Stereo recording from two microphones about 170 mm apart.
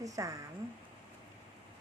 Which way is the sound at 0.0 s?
20° right (ahead or behind).